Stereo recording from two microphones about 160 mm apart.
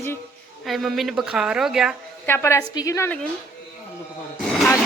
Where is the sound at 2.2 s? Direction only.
15° left (ahead or behind).